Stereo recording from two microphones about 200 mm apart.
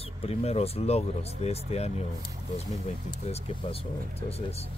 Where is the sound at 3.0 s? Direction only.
30° left (ahead or behind).